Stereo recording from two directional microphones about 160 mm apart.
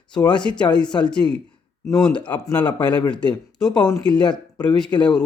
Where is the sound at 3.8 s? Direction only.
25° left (ahead or behind).